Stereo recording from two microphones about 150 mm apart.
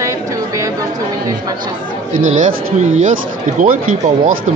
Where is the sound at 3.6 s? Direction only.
65° right (ahead or behind).